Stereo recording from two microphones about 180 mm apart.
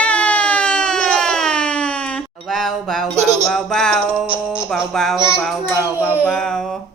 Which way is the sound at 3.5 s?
5° left (ahead or behind).